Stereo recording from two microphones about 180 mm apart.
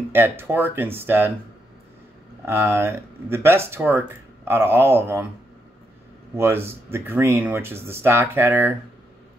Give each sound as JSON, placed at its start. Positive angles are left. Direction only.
{"t": 0.1, "sound": "speech", "side_deg": -10}
{"t": 2.4, "sound": "speech", "side_deg": -15}
{"t": 6.3, "sound": "speech", "side_deg": -15}